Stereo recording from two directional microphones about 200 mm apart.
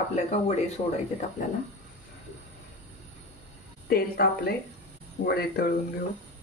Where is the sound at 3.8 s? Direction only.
50° left (ahead or behind).